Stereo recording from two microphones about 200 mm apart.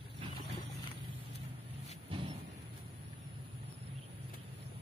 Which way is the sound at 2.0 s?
25° right (ahead or behind).